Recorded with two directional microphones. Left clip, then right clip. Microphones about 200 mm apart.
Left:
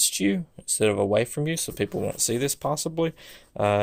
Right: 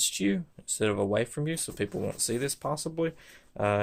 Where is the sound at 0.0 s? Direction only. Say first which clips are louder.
Left 4 dB; 30° left (ahead or behind).